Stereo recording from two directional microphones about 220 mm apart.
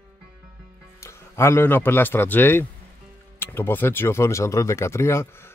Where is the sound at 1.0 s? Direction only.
10° left (ahead or behind).